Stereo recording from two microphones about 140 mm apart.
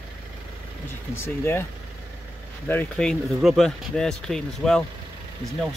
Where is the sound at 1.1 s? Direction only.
15° left (ahead or behind).